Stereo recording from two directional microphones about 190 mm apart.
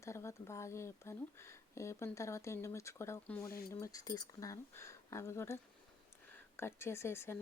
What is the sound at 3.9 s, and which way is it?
A woman's voice, 20° left (ahead or behind).